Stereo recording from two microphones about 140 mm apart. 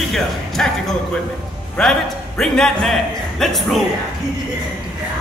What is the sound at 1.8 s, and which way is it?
Speech, 5° left (ahead or behind).